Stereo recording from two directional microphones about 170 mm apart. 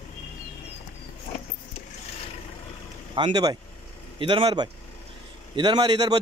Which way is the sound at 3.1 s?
25° right (ahead or behind).